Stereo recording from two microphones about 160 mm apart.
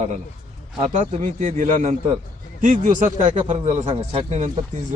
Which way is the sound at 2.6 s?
55° right (ahead or behind).